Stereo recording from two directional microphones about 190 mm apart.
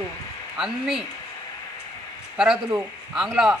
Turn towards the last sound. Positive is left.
turn(degrees=-5)  # may be behind; listen again after turning